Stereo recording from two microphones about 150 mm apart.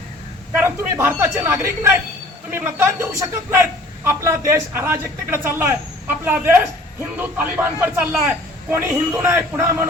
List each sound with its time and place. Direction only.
0.5 s a man's voice: 15° right (ahead or behind)